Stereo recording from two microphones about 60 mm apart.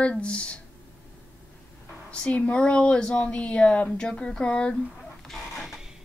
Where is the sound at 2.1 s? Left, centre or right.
Left.